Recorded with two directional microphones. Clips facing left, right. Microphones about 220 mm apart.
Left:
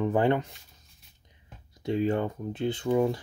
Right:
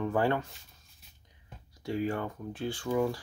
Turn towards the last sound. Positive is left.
turn(degrees=20)  # may be behind; listen again after turning